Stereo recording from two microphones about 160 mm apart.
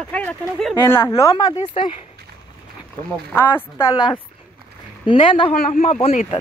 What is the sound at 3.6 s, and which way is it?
Speech, 15° left (ahead or behind).